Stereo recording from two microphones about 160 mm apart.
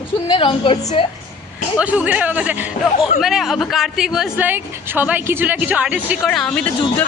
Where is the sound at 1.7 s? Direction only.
10° right (ahead or behind).